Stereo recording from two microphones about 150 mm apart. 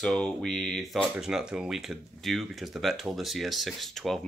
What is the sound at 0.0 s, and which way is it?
Speech, 5° left (ahead or behind).